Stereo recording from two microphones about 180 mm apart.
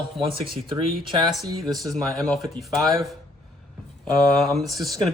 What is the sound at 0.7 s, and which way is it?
Speech, 25° right (ahead or behind).